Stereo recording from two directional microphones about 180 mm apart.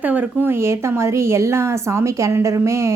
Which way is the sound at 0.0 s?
10° right (ahead or behind).